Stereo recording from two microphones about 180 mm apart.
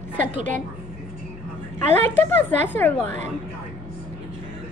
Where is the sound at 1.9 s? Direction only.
10° left (ahead or behind).